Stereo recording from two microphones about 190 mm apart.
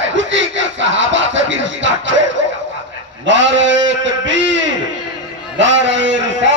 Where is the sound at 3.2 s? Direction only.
75° right (ahead or behind).